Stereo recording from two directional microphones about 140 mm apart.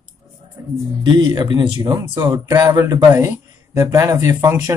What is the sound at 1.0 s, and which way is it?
Speech, 35° right (ahead or behind).